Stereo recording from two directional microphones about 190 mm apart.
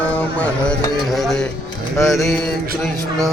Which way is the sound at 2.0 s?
Centre (ahead or behind).